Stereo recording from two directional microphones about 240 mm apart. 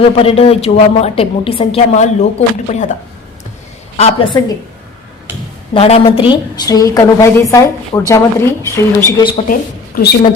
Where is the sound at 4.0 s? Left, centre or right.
Left.